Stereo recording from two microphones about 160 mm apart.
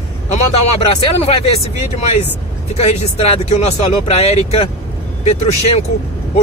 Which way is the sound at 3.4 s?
40° left (ahead or behind).